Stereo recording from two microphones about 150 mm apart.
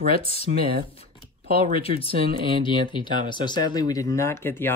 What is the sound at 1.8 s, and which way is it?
Speech, 40° left (ahead or behind).